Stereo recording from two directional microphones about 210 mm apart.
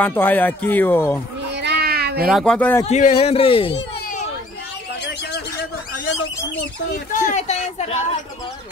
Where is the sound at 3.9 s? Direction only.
40° left (ahead or behind).